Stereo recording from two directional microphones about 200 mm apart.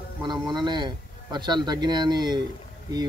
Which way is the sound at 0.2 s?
20° right (ahead or behind).